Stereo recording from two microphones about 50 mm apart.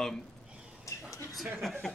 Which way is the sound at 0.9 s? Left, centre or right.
Left.